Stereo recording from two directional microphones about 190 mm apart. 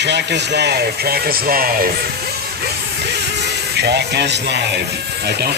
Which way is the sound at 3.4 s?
60° right (ahead or behind).